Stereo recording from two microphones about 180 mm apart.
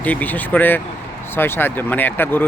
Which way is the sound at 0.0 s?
10° left (ahead or behind).